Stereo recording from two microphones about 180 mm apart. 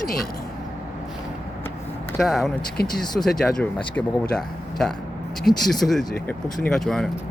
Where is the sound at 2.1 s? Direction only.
Centre (ahead or behind).